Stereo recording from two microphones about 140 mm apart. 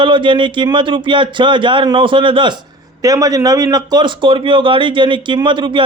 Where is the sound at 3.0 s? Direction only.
25° right (ahead or behind).